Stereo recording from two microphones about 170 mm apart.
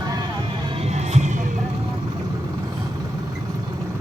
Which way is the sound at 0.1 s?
25° right (ahead or behind).